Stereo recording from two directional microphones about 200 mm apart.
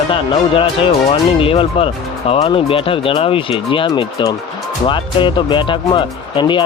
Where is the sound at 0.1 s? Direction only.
25° left (ahead or behind).